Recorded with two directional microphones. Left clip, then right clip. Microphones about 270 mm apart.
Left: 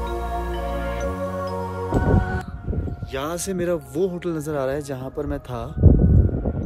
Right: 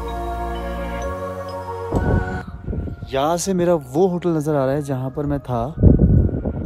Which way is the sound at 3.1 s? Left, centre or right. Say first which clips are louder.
Right 7 dB; centre.